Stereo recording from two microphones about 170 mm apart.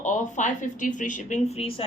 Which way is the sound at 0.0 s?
45° left (ahead or behind).